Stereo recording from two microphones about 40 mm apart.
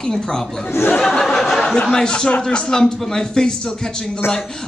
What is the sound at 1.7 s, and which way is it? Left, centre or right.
A man's voice, left.